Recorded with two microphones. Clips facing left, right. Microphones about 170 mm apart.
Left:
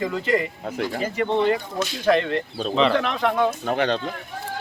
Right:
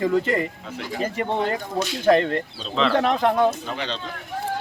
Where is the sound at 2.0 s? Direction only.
45° right (ahead or behind).